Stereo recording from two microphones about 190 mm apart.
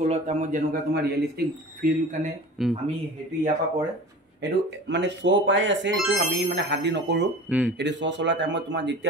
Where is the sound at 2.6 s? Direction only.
Centre (ahead or behind).